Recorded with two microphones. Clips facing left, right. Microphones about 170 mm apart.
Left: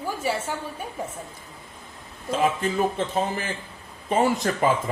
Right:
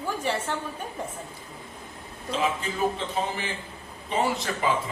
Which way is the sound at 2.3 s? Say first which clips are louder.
Left 5 dB; 50° left (ahead or behind).